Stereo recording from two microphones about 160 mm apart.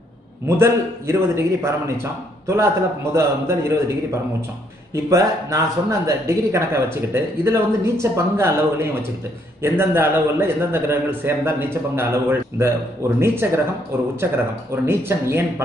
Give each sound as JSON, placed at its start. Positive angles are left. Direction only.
{"t": 0.5, "sound": "a man's voice", "side_deg": -15}
{"t": 5.1, "sound": "a man's voice", "side_deg": -20}
{"t": 14.9, "sound": "a man's voice", "side_deg": -15}